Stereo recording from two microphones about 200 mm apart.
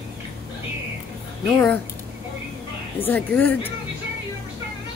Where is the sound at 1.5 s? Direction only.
5° left (ahead or behind).